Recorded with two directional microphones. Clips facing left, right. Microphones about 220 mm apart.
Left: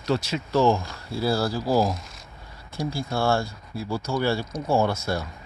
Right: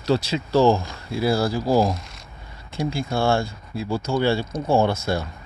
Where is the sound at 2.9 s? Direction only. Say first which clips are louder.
Right 2 dB; 25° right (ahead or behind).